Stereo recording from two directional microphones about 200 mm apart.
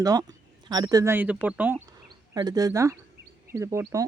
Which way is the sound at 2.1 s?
20° right (ahead or behind).